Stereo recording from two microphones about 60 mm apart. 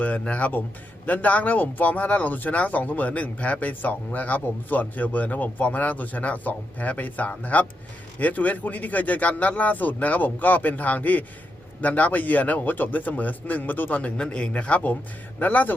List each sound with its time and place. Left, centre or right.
0.0 s speech: left